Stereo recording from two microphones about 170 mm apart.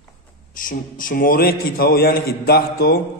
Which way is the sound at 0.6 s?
55° left (ahead or behind).